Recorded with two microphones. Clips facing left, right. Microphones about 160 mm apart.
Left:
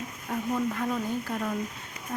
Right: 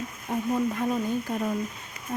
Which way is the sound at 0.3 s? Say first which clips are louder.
Right 3 dB; 20° right (ahead or behind).